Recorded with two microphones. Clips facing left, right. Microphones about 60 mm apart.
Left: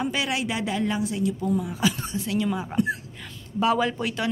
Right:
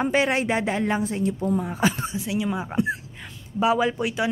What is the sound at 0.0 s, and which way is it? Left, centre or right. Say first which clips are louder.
Speech: right 5 dB; right.